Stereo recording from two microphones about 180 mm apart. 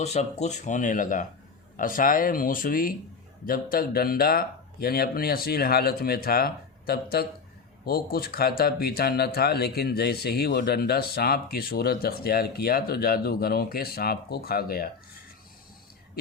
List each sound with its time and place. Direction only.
0.0 s speech: 40° left (ahead or behind); by 14.8 s 55° left (ahead or behind)